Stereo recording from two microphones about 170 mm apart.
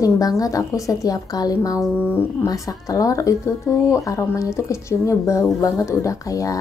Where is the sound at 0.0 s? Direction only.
20° left (ahead or behind).